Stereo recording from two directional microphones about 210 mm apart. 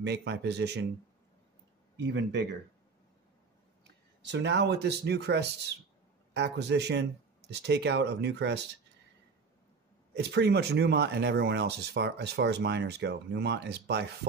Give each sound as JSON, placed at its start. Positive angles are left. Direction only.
{"t": 0.0, "sound": "speech", "side_deg": -55}
{"t": 2.0, "sound": "speech", "side_deg": -55}
{"t": 4.2, "sound": "speech", "side_deg": -55}
{"t": 10.1, "sound": "speech", "side_deg": -50}